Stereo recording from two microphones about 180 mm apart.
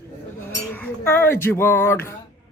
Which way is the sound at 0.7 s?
10° left (ahead or behind).